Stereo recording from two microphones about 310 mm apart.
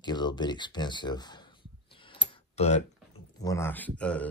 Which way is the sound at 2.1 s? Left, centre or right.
Left.